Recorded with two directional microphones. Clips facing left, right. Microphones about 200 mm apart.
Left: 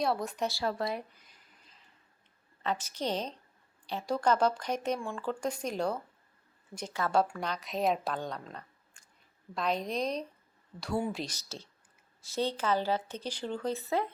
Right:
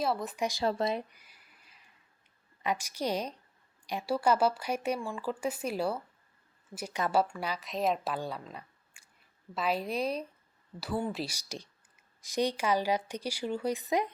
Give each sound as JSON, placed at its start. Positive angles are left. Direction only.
{"t": 0.0, "sound": "speech", "side_deg": 0}
{"t": 0.4, "sound": "speech", "side_deg": -20}
{"t": 1.1, "sound": "a sound", "side_deg": -10}
{"t": 2.6, "sound": "a woman's voice", "side_deg": -10}